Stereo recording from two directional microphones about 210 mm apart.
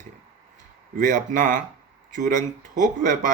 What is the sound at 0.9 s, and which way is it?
Speech, 40° right (ahead or behind).